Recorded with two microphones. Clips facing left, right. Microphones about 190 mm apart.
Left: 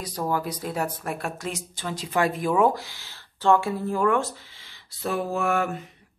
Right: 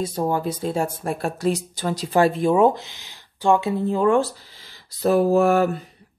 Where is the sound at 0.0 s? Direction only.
25° right (ahead or behind).